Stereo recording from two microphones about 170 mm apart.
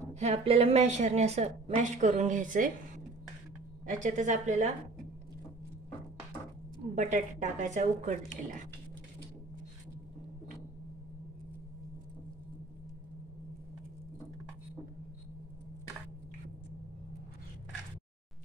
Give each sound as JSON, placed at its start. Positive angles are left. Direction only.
{"t": 0.1, "sound": "a woman's voice", "side_deg": -40}
{"t": 3.8, "sound": "a woman's voice", "side_deg": -50}
{"t": 7.0, "sound": "a woman's voice", "side_deg": -45}